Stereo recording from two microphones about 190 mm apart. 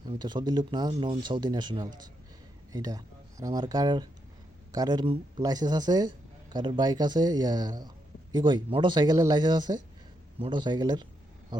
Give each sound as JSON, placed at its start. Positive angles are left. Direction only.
{"t": 0.1, "sound": "speech", "side_deg": -25}